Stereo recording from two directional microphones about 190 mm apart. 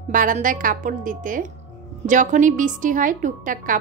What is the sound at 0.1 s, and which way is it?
Speech, 45° right (ahead or behind).